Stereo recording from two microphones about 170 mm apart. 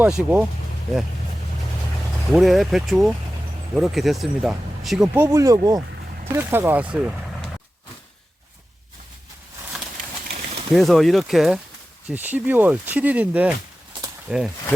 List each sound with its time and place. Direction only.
0.0 s speech: 10° right (ahead or behind)
2.3 s speech: centre (ahead or behind)
5.1 s speech: 15° right (ahead or behind)
10.8 s speech: centre (ahead or behind)